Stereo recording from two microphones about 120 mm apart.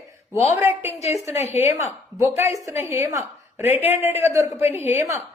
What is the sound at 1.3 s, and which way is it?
Speech, 70° left (ahead or behind).